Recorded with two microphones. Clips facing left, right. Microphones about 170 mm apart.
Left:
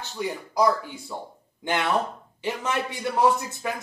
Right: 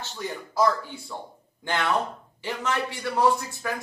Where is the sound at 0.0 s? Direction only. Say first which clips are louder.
Left 3 dB; 15° left (ahead or behind).